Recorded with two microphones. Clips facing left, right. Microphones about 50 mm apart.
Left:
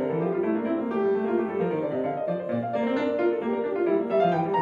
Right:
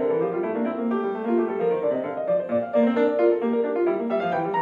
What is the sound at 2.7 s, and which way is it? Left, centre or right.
Music, centre.